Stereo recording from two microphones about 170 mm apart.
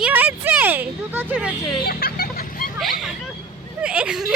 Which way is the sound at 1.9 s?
60° left (ahead or behind).